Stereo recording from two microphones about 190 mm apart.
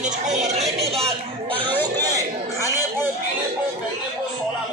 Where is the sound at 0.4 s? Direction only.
35° right (ahead or behind).